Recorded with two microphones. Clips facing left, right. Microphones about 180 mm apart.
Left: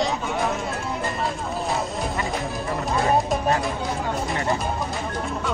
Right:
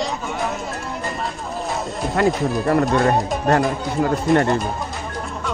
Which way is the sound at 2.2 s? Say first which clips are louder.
Right 16 dB; 75° right (ahead or behind).